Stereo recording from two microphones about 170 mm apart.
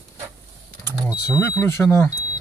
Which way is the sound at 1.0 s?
15° left (ahead or behind).